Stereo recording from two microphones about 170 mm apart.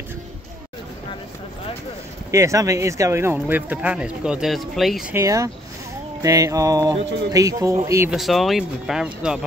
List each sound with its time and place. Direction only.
2.3 s speech: 20° right (ahead or behind); by 5.1 s centre (ahead or behind)
5.1 s speech: 20° right (ahead or behind)
6.2 s a sound: 20° right (ahead or behind)
7.8 s speech: 15° right (ahead or behind)
8.1 s speech: centre (ahead or behind)